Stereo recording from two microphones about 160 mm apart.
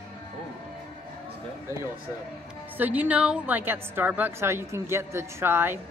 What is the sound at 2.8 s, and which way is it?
A woman's voice, 10° right (ahead or behind).